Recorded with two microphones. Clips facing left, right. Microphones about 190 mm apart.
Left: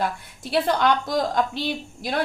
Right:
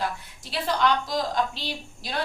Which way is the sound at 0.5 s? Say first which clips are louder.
Left 4 dB; 55° left (ahead or behind).